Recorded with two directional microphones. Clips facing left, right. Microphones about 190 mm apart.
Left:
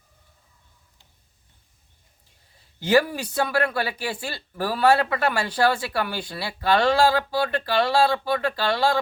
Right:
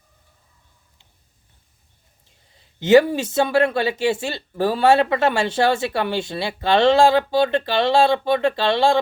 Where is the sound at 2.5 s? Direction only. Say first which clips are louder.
Right 6 dB; 20° right (ahead or behind).